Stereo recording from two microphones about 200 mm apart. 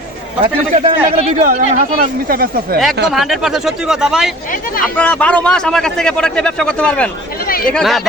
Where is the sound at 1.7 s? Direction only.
45° right (ahead or behind).